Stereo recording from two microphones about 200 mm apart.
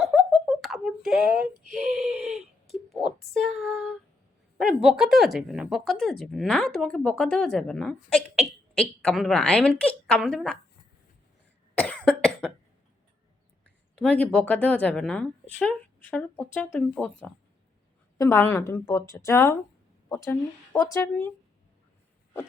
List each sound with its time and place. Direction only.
0.0 s a sound: centre (ahead or behind)
1.3 s speech: 40° right (ahead or behind)
1.8 s a sound: centre (ahead or behind)
4.8 s speech: 5° right (ahead or behind)
11.7 s cough: 5° left (ahead or behind)
13.9 s a woman's voice: 5° left (ahead or behind)